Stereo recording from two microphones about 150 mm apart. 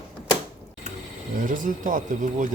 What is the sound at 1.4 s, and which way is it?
Speech, 60° right (ahead or behind).